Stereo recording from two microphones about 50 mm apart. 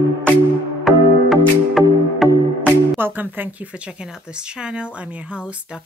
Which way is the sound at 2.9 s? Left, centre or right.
Right.